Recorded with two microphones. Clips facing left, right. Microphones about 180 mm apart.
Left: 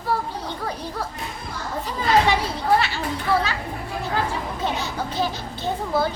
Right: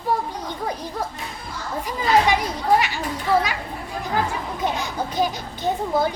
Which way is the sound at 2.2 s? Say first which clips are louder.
Right 1 dB; 15° right (ahead or behind).